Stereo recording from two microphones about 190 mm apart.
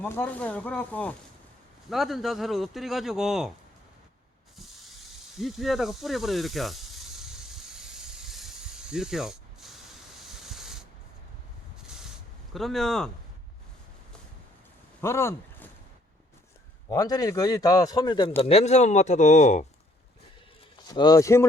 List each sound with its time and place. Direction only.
0.0 s speech: 10° left (ahead or behind)
4.5 s spray: centre (ahead or behind)
5.4 s snake: centre (ahead or behind)
10.2 s hiss: centre (ahead or behind)
11.8 s a sound: 5° right (ahead or behind)
12.5 s speech: centre (ahead or behind)
15.0 s speech: 15° left (ahead or behind)
16.9 s a man's voice: 20° left (ahead or behind); by 19.6 s 40° left (ahead or behind)
20.8 s a man's voice: 20° left (ahead or behind)